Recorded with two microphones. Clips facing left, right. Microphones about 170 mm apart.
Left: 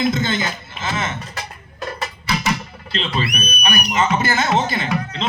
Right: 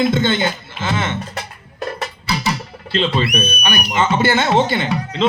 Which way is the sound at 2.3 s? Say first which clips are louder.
Even; 35° right (ahead or behind).